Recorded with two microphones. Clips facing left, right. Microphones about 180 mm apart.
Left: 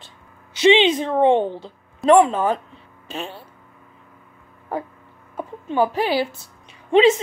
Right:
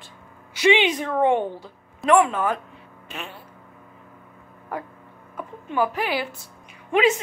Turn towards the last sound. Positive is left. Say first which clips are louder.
# left 5 dB
turn(degrees=30)  # may be behind; listen again after turning